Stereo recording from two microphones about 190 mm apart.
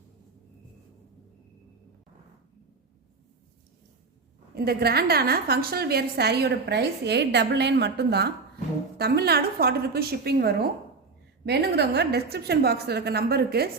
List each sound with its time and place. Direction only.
4.5 s a woman's voice: 55° right (ahead or behind)